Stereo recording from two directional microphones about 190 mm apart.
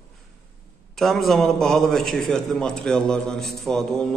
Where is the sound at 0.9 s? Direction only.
Centre (ahead or behind).